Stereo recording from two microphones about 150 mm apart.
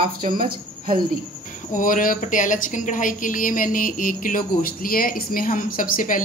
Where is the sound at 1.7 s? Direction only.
60° left (ahead or behind).